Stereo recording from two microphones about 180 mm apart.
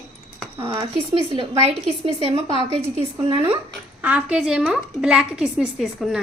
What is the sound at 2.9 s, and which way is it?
A woman's voice, 15° right (ahead or behind).